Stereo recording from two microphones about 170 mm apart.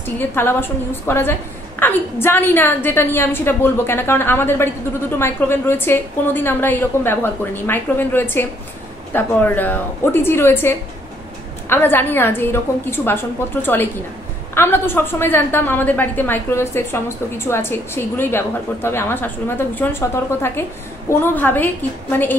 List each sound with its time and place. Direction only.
0.0 s a woman's voice: 10° left (ahead or behind)